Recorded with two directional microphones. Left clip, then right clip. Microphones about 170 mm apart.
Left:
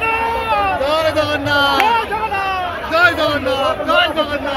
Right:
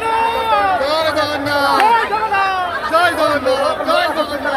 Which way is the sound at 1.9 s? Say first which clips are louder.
Right 3 dB; 30° right (ahead or behind).